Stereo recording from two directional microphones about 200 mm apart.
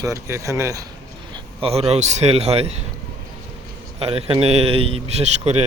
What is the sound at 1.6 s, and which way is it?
A man's voice, 30° right (ahead or behind).